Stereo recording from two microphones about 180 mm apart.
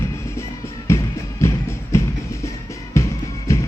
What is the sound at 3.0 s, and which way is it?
Music, 15° left (ahead or behind).